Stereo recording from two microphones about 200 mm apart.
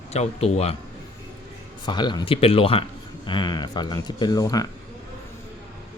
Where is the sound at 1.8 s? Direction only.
20° left (ahead or behind).